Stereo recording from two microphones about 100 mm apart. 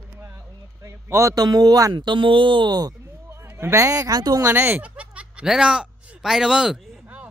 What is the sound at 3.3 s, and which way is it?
A man's voice, 25° right (ahead or behind).